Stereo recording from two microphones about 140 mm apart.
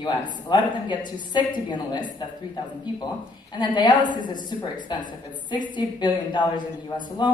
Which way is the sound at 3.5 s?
35° left (ahead or behind).